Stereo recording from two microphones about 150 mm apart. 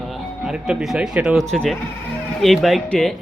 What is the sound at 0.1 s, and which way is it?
Speech, 5° right (ahead or behind).